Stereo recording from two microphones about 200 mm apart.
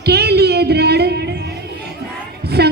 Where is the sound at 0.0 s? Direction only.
55° right (ahead or behind).